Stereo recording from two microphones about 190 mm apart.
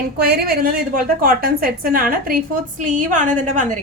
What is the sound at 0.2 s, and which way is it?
A woman's voice, 55° right (ahead or behind).